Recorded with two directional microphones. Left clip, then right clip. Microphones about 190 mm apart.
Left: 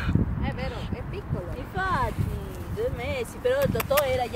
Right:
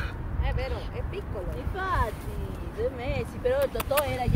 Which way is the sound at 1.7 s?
35° left (ahead or behind).